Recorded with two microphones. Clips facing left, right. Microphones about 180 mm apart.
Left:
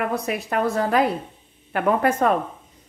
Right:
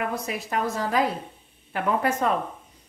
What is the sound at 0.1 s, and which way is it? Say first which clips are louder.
A woman's voice: left 4 dB; 60° left (ahead or behind).